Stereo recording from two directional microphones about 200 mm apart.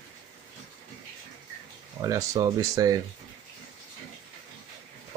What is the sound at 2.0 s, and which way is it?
Speech, 15° right (ahead or behind).